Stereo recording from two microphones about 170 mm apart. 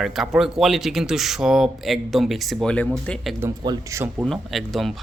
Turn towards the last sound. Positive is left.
turn(degrees=0)  # may be behind; listen again after turning